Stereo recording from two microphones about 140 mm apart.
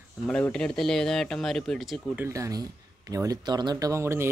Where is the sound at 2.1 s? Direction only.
20° right (ahead or behind).